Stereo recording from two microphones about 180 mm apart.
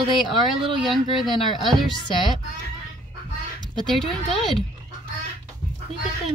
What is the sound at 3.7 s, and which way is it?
Speech, centre (ahead or behind).